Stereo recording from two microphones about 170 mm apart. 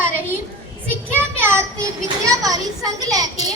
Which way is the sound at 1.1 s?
15° right (ahead or behind).